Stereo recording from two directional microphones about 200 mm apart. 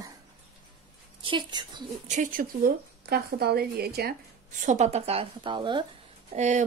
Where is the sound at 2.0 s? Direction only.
40° right (ahead or behind).